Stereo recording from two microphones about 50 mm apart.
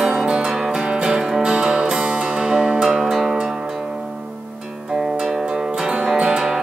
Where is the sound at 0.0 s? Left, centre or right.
Centre.